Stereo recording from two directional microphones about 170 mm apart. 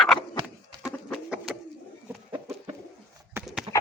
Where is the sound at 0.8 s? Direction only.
5° right (ahead or behind).